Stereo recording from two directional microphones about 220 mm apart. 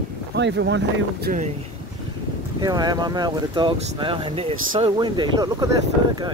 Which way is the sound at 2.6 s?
20° right (ahead or behind).